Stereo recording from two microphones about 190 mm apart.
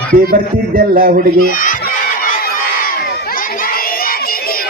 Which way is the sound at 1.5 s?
45° left (ahead or behind).